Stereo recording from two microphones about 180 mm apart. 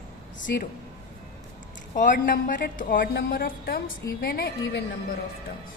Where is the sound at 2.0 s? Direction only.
45° left (ahead or behind); by 4.8 s 65° left (ahead or behind).